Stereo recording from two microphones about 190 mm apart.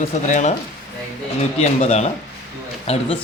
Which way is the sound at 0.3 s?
40° left (ahead or behind).